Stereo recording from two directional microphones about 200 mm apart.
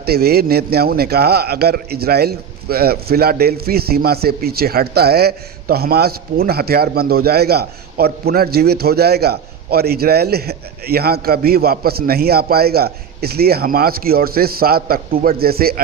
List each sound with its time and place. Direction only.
0.0 s a man's voice: 50° right (ahead or behind)